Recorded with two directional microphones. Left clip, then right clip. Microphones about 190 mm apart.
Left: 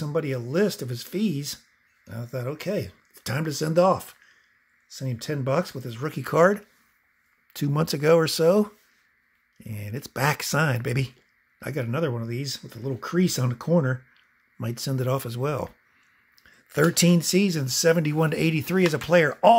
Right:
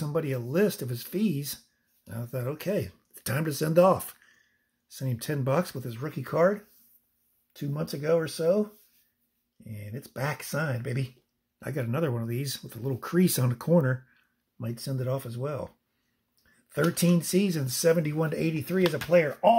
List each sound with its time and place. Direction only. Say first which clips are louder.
0.0 s speech: left 3 dB; centre (ahead or behind)
5.9 s speech: left 5 dB; 15° left (ahead or behind)
7.5 s speech: left 8 dB; 30° left (ahead or behind)
11.6 s speech: left 3 dB; 5° left (ahead or behind)
14.6 s speech: left 5 dB; 20° left (ahead or behind)
16.9 s speech: left 5 dB; 20° left (ahead or behind)